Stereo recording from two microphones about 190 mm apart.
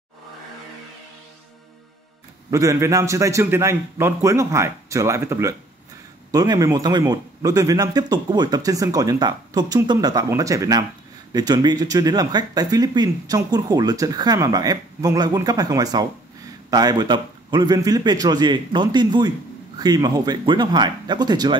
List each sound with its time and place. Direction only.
2.5 s a man's voice: 15° right (ahead or behind)